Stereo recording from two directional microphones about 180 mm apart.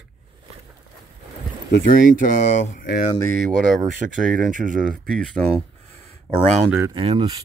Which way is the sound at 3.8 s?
50° right (ahead or behind).